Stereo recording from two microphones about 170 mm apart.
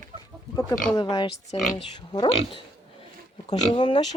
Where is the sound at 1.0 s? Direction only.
25° left (ahead or behind).